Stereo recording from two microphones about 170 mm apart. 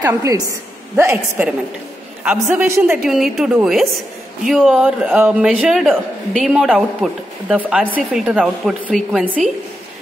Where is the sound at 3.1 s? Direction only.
Centre (ahead or behind).